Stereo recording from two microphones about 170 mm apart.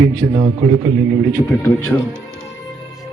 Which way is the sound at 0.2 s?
20° right (ahead or behind).